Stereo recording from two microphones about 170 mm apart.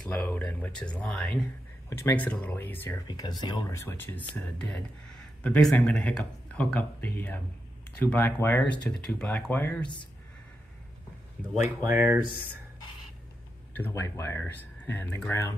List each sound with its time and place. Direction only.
0.0 s speech: 10° left (ahead or behind)
3.1 s speech: 25° left (ahead or behind)
11.9 s speech: 10° right (ahead or behind)
13.7 s speech: 15° left (ahead or behind)